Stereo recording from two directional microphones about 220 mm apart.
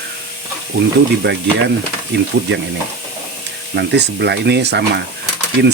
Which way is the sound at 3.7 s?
50° right (ahead or behind).